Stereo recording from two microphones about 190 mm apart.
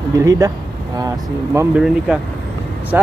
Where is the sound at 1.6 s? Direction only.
5° right (ahead or behind).